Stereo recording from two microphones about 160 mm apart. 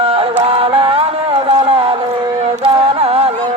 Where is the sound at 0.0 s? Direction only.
35° right (ahead or behind).